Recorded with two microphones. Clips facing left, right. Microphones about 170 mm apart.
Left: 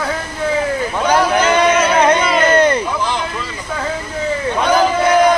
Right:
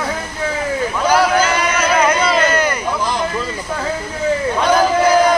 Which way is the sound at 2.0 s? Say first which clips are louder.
Left 2 dB; 30° left (ahead or behind).